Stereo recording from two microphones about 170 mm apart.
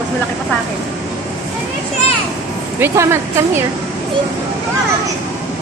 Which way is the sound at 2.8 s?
15° right (ahead or behind).